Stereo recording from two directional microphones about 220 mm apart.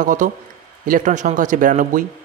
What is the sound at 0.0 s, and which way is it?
Speech, 35° right (ahead or behind).